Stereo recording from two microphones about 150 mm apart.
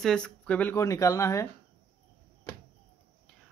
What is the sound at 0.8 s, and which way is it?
Speech, 20° left (ahead or behind).